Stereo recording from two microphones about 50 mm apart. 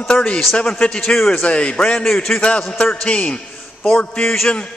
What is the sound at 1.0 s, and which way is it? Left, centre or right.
Speech, centre.